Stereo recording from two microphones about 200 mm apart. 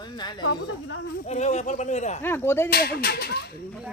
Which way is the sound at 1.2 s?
35° left (ahead or behind).